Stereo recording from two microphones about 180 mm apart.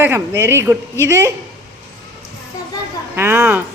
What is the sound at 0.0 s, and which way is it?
A woman's voice, 15° right (ahead or behind).